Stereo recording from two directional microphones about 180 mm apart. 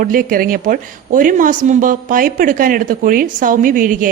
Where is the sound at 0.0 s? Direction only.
50° right (ahead or behind).